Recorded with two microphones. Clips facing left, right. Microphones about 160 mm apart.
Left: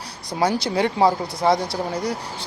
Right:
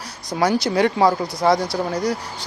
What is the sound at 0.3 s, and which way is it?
Speech, 30° left (ahead or behind).